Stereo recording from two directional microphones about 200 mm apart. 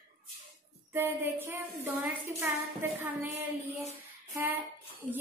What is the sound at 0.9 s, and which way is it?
A woman's voice, 10° right (ahead or behind).